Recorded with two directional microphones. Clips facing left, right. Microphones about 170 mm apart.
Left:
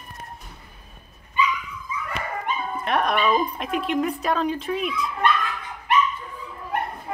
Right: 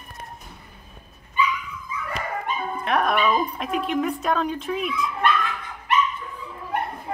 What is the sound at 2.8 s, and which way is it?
Speech, centre (ahead or behind).